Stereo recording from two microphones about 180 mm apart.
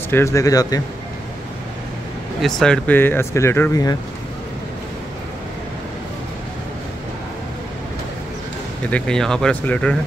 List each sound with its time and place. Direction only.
0.1 s speech: 15° left (ahead or behind)
2.4 s speech: 5° left (ahead or behind)
8.9 s speech: 5° left (ahead or behind)